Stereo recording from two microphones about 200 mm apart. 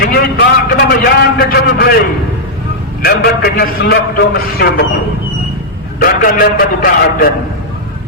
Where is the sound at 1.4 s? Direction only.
50° left (ahead or behind).